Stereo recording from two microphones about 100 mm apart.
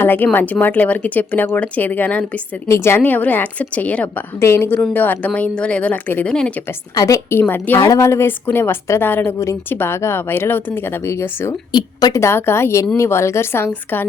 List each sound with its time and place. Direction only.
0.0 s speech: 20° left (ahead or behind)
2.6 s speech: 30° left (ahead or behind)
4.4 s speech: 25° left (ahead or behind)
6.9 s a woman's voice: 35° left (ahead or behind)
7.3 s speech: 20° left (ahead or behind)
7.8 s speech: 35° left (ahead or behind)
11.7 s a woman's voice: 45° left (ahead or behind)
12.1 s speech: 25° left (ahead or behind)